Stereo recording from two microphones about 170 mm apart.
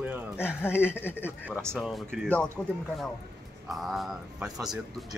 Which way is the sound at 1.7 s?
Centre (ahead or behind).